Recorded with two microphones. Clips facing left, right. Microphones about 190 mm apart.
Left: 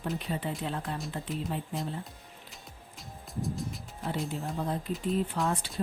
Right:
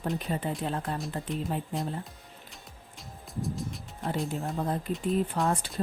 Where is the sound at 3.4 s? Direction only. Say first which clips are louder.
Right 1 dB; centre (ahead or behind).